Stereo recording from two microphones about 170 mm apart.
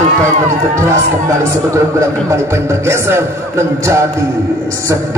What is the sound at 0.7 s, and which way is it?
A man's voice, 15° right (ahead or behind).